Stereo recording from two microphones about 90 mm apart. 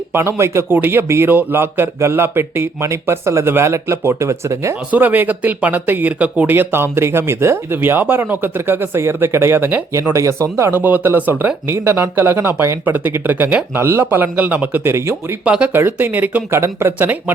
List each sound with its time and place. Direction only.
0.1 s speech: 30° right (ahead or behind)
4.9 s speech: 20° right (ahead or behind); by 10.7 s 35° right (ahead or behind)
10.7 s speech: 20° right (ahead or behind)
15.4 s speech: 15° right (ahead or behind)